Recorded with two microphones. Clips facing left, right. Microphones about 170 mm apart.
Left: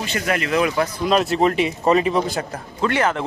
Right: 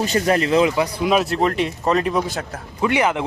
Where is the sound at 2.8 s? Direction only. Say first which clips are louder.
Right 1 dB; 15° right (ahead or behind).